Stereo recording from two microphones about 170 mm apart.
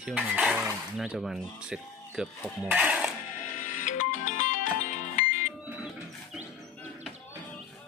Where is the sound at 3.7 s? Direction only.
50° left (ahead or behind).